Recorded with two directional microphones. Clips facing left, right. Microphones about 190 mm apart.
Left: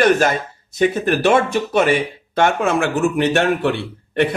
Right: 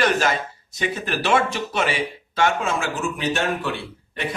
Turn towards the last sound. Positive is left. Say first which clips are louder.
# left 12 dB
turn(degrees=65)  # may be behind; listen again after turning